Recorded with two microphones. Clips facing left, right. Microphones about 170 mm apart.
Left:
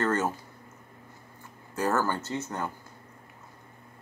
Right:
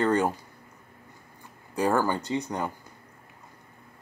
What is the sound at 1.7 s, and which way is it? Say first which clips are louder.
Speech: right 3 dB; 15° right (ahead or behind).